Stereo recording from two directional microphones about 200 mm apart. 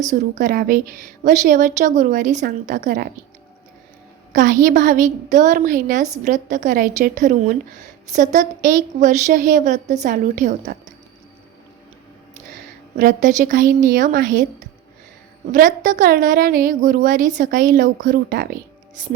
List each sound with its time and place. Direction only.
0.1 s a woman's voice: 40° right (ahead or behind)
4.3 s a woman's voice: 40° right (ahead or behind)
13.0 s a woman's voice: 45° right (ahead or behind)
15.5 s a woman's voice: 40° right (ahead or behind)